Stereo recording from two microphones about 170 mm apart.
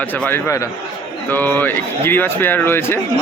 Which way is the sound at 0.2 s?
15° left (ahead or behind).